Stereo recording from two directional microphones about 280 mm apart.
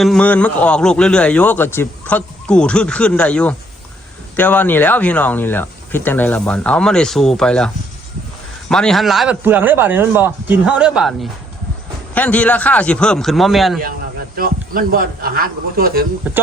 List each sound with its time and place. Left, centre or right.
0.0 s a man's voice: centre
8.7 s a man's voice: centre
14.3 s a man's voice: right